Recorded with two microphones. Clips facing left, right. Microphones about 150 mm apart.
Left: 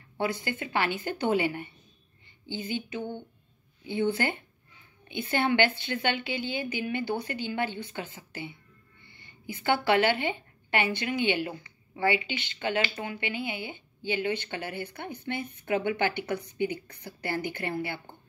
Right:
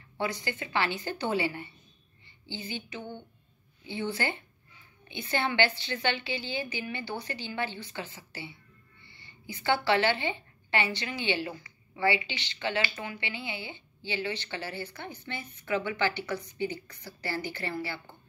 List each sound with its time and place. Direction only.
0.2 s a woman's voice: 50° left (ahead or behind)